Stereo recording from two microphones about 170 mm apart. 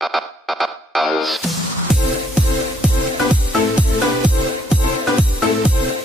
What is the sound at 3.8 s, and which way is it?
Music, 5° right (ahead or behind).